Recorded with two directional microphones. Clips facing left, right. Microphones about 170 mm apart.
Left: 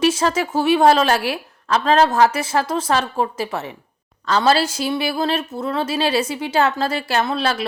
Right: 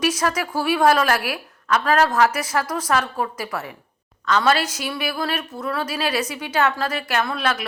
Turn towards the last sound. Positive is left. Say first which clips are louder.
# left 3 dB
turn(degrees=30)  # may be behind; listen again after turning